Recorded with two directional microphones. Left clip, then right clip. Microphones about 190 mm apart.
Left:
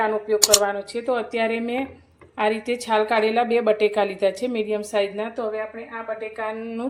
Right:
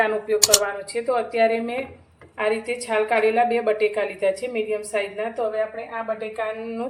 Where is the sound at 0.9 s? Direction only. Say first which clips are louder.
Right 5 dB; 35° left (ahead or behind).